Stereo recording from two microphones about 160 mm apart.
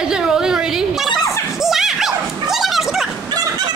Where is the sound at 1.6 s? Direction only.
Centre (ahead or behind).